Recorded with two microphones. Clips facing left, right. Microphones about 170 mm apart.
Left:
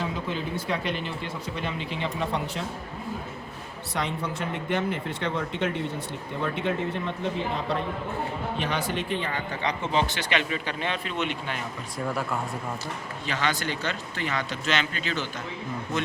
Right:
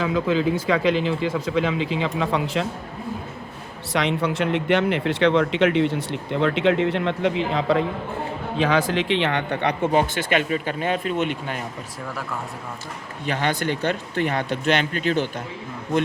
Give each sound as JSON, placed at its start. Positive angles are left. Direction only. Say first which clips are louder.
{"t": 0.0, "sound": "speech", "louder": "right 10 dB", "side_deg": -90}
{"t": 3.9, "sound": "speech", "louder": "right 8 dB", "side_deg": -90}
{"t": 13.2, "sound": "speech", "louder": "right 5 dB", "side_deg": -55}